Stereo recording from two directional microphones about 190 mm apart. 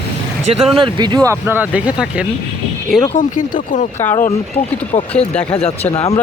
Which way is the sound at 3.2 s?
45° left (ahead or behind).